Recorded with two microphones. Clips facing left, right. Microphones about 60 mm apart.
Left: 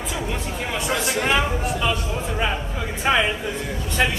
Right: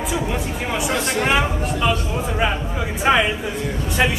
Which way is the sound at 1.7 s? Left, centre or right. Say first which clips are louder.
Right 3 dB; centre.